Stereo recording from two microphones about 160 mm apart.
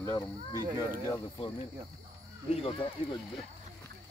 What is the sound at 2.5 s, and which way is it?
Speech, 35° left (ahead or behind).